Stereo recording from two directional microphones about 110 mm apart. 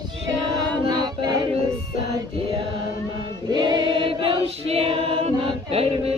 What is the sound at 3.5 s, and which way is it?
Choir, 45° right (ahead or behind).